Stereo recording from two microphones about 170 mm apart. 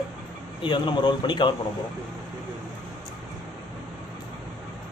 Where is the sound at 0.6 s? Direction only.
25° left (ahead or behind).